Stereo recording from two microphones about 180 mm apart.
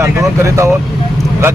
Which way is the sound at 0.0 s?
15° right (ahead or behind).